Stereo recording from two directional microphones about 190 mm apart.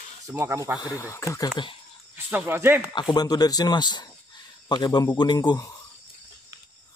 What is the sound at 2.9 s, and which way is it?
Speech, 25° left (ahead or behind).